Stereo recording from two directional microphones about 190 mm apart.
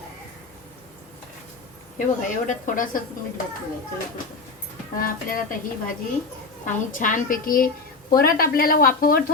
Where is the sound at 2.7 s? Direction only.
45° left (ahead or behind).